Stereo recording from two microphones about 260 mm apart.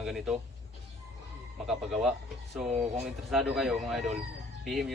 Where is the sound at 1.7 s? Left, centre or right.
Centre.